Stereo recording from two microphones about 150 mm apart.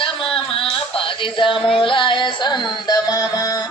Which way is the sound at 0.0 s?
35° left (ahead or behind).